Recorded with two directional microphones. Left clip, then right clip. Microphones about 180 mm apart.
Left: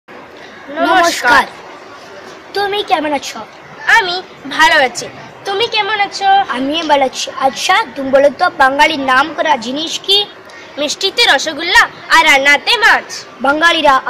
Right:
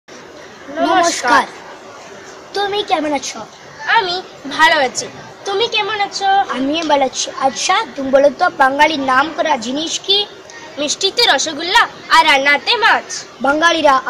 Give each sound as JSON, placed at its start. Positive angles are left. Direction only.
{"t": 0.7, "sound": "a man's voice", "side_deg": 0}
{"t": 2.5, "sound": "a woman's voice", "side_deg": 15}
{"t": 3.8, "sound": "a woman's voice", "side_deg": -5}
{"t": 6.5, "sound": "a woman's voice", "side_deg": 15}
{"t": 10.8, "sound": "a woman's voice", "side_deg": -5}
{"t": 13.4, "sound": "a woman's voice", "side_deg": 20}